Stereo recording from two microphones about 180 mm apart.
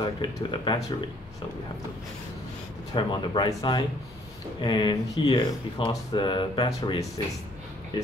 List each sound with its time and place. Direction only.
0.0 s speech: 25° left (ahead or behind)
2.9 s speech: 25° left (ahead or behind)